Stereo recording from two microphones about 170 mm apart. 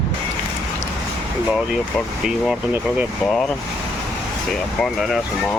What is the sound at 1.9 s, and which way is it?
Speech, centre (ahead or behind).